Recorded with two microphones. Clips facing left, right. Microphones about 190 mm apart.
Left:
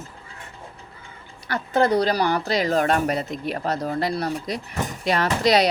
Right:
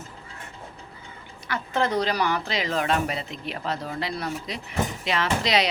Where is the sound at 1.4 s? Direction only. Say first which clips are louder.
Left 5 dB; 35° left (ahead or behind).